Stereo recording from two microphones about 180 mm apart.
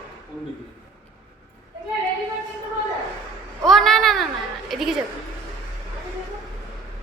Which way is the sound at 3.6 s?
Centre (ahead or behind).